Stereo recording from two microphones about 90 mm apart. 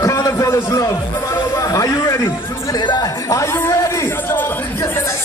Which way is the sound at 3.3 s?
30° left (ahead or behind).